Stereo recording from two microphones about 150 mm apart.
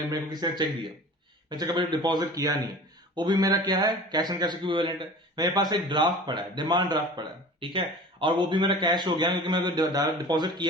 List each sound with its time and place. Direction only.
0.1 s a man's voice: 25° right (ahead or behind)